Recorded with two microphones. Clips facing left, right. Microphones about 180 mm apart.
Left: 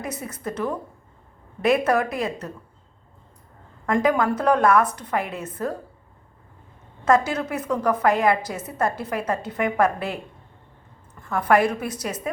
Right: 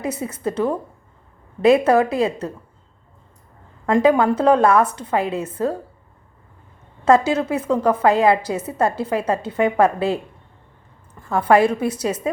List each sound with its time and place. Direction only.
0.0 s a woman's voice: 30° right (ahead or behind)
3.8 s a woman's voice: 30° right (ahead or behind)
7.0 s a woman's voice: 30° right (ahead or behind)
11.3 s a woman's voice: 30° right (ahead or behind)